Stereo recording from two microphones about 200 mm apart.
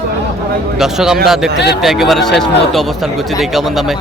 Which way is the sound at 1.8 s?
Centre (ahead or behind).